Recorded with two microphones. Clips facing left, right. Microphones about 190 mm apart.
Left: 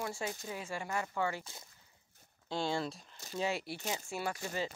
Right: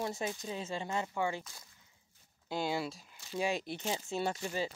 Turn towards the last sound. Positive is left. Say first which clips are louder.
# right 2 dB
turn(degrees=-20)  # may be behind; listen again after turning